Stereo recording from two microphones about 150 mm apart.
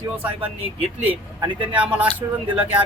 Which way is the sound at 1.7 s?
10° right (ahead or behind).